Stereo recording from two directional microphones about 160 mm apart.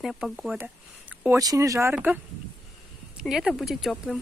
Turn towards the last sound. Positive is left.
turn(degrees=0)  # may be behind; listen again after turning